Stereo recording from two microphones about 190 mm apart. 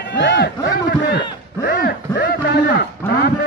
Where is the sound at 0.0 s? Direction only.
65° left (ahead or behind).